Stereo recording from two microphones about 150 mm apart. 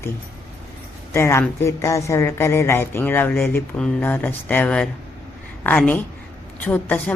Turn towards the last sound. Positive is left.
turn(degrees=10)  # may be behind; listen again after turning